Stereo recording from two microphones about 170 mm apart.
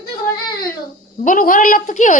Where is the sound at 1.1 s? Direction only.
50° left (ahead or behind).